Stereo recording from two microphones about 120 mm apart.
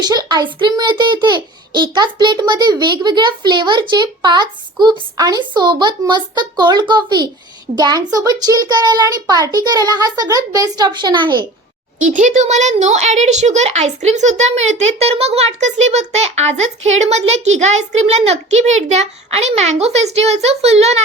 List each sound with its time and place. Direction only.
0.0 s a child's voice: 35° right (ahead or behind)
12.0 s a woman's voice: 90° right; by 21.0 s 65° right (ahead or behind)